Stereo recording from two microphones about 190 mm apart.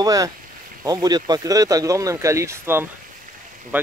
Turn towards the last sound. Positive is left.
turn(degrees=-10)  # may be behind; listen again after turning